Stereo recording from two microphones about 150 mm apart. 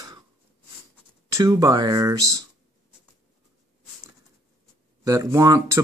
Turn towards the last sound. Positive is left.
turn(degrees=-20)  # may be behind; listen again after turning